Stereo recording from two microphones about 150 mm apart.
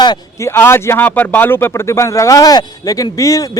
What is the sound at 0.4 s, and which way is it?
Speech, 15° left (ahead or behind).